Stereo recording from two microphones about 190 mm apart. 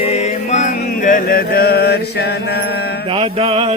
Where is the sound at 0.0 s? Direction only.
35° left (ahead or behind); by 3.0 s 60° left (ahead or behind).